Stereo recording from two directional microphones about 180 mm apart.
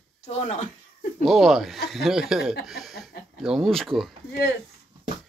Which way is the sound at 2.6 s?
Centre (ahead or behind).